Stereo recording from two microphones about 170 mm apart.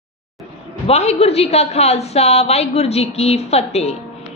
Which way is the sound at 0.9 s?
35° left (ahead or behind).